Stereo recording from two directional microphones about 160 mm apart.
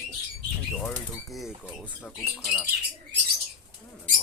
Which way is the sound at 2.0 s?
10° left (ahead or behind).